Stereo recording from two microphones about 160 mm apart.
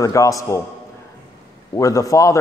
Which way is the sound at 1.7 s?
20° left (ahead or behind).